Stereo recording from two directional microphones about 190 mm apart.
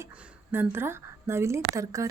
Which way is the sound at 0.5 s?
10° right (ahead or behind).